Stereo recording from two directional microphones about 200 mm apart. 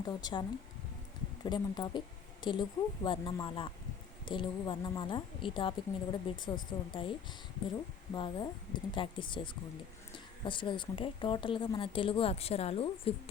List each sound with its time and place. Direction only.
0.0 s speech: 20° left (ahead or behind)
1.5 s speech: 20° left (ahead or behind)